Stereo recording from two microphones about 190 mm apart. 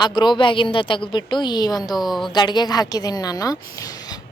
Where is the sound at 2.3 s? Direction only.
25° left (ahead or behind).